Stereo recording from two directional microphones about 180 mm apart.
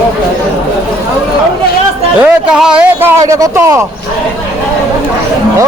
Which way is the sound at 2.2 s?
5° right (ahead or behind).